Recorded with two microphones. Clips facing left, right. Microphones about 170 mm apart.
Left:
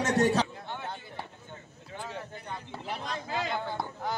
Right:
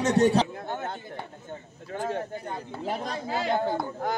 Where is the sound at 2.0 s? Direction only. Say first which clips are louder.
Right 9 dB; 55° right (ahead or behind).